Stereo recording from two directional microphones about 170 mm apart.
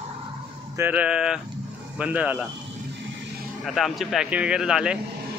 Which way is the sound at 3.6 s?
Centre (ahead or behind).